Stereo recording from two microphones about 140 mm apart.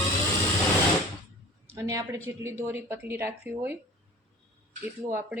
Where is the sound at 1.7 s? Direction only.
20° right (ahead or behind).